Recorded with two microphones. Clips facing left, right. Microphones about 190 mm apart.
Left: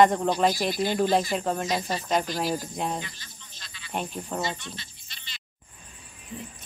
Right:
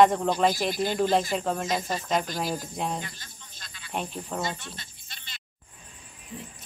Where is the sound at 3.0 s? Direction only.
50° right (ahead or behind).